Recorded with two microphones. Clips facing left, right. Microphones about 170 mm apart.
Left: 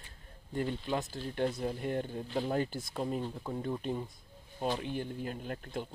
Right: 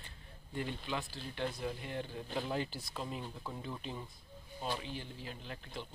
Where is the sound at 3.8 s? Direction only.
50° left (ahead or behind).